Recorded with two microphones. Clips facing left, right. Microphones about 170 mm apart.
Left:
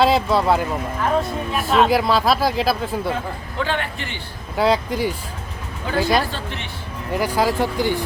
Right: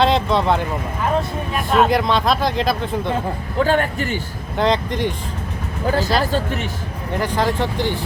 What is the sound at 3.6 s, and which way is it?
Speech, 40° right (ahead or behind).